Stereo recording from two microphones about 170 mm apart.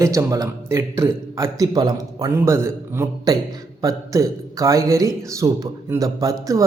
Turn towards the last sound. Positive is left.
turn(degrees=-20)  # may be behind; listen again after turning